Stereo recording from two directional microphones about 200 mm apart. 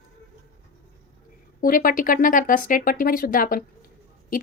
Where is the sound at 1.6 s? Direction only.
45° left (ahead or behind).